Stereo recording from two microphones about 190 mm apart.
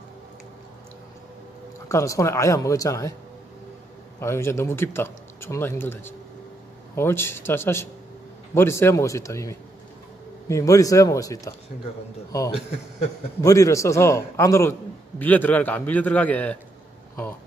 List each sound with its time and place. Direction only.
1.9 s a man's voice: 15° left (ahead or behind)
4.2 s a man's voice: 15° left (ahead or behind)
13.4 s a man's voice: 15° left (ahead or behind)